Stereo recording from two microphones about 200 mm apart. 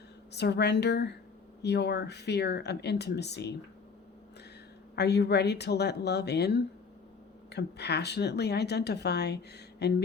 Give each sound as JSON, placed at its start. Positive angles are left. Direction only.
{"t": 0.3, "sound": "speech", "side_deg": 55}
{"t": 4.9, "sound": "speech", "side_deg": 55}